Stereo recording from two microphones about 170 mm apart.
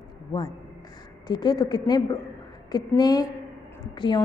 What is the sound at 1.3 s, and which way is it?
A woman's voice, 25° left (ahead or behind).